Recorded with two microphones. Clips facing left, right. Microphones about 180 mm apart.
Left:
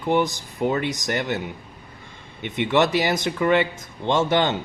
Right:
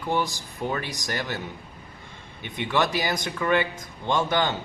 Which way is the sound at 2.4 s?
20° left (ahead or behind).